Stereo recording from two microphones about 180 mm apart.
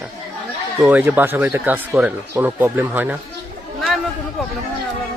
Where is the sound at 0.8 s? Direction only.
10° right (ahead or behind).